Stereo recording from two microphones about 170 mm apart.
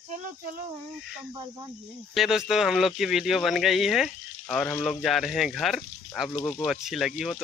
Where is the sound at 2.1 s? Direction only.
Centre (ahead or behind).